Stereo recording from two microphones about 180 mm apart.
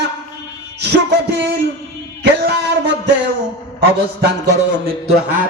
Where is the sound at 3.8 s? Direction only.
70° right (ahead or behind).